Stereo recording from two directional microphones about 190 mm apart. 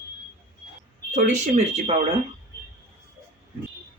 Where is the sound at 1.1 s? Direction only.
40° right (ahead or behind).